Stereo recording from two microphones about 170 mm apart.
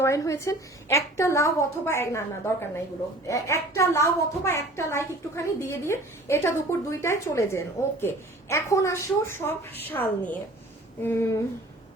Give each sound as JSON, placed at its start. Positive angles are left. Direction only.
{"t": 0.0, "sound": "a woman's voice", "side_deg": 15}